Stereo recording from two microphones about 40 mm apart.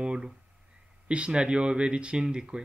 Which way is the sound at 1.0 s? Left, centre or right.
Right.